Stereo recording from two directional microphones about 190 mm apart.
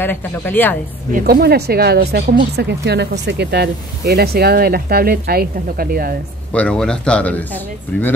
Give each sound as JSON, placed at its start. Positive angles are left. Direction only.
{"t": 0.0, "sound": "speech", "side_deg": 10}
{"t": 1.1, "sound": "speech", "side_deg": -55}
{"t": 6.5, "sound": "speech", "side_deg": 5}